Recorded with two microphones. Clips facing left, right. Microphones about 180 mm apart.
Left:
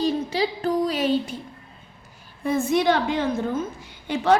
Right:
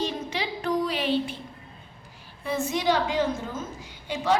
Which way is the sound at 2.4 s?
50° left (ahead or behind).